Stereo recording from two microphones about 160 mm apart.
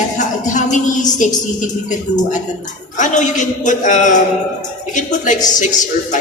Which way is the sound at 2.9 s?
50° left (ahead or behind).